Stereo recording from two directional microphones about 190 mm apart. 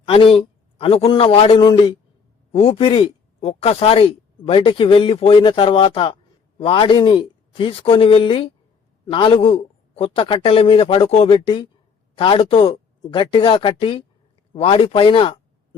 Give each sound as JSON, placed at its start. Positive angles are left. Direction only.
{"t": 0.1, "sound": "speech", "side_deg": 30}